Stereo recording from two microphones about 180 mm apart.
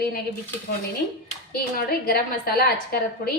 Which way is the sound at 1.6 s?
55° left (ahead or behind).